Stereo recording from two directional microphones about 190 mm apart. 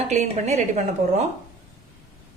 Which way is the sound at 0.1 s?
35° right (ahead or behind).